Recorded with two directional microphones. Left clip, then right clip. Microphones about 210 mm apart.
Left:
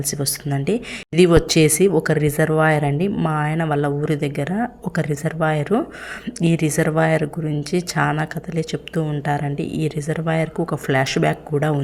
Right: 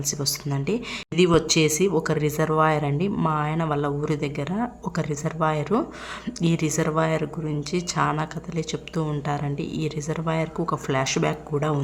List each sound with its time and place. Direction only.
0.1 s speech: 15° left (ahead or behind)